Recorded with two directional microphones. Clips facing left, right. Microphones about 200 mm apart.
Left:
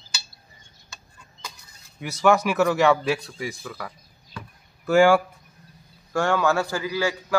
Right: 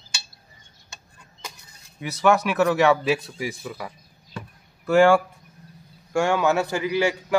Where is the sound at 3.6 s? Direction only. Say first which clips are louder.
Right 2 dB; 15° right (ahead or behind).